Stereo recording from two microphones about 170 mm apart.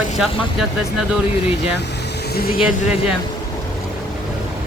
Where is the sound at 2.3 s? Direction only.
60° left (ahead or behind).